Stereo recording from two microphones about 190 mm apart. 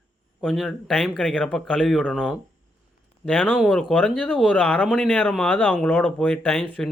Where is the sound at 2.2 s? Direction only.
5° right (ahead or behind).